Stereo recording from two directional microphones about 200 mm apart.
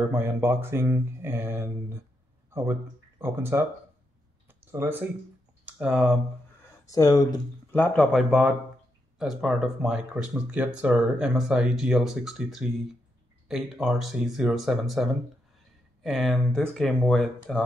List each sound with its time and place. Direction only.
0.1 s speech: 10° right (ahead or behind)
4.5 s a sound: 10° right (ahead or behind)
5.7 s speech: 5° right (ahead or behind)
6.9 s speech: 15° left (ahead or behind)
7.7 s speech: 5° left (ahead or behind)